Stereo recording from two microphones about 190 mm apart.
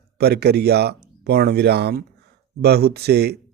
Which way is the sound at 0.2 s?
60° right (ahead or behind).